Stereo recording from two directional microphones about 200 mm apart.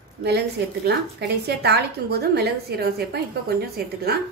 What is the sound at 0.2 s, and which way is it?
A woman's voice, 55° right (ahead or behind).